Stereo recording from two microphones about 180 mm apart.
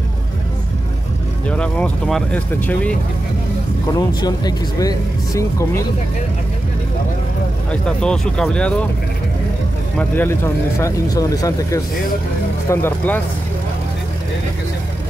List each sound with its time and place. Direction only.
1.5 s speech: 5° left (ahead or behind)
3.9 s speech: 25° left (ahead or behind)
7.7 s speech: 5° left (ahead or behind)
9.9 s speech: 10° left (ahead or behind)